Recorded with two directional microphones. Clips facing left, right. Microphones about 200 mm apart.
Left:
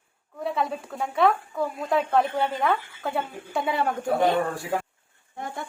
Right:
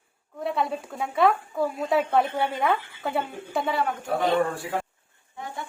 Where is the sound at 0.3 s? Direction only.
Centre (ahead or behind).